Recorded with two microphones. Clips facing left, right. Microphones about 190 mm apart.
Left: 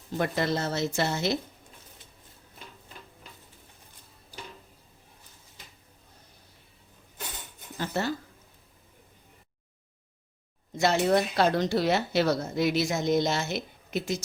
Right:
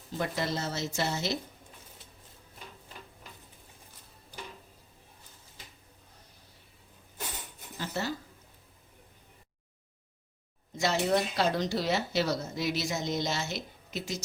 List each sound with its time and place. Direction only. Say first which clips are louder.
0.2 s speech: left 5 dB; 60° left (ahead or behind)
7.8 s a sound: left 4 dB; 55° left (ahead or behind)
10.8 s speech: left 4 dB; 55° left (ahead or behind)